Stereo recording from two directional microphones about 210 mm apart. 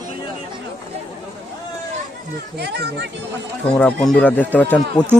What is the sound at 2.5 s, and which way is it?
Speech, 50° right (ahead or behind).